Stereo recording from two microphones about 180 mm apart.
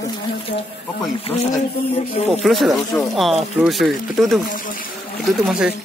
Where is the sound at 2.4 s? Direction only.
Centre (ahead or behind).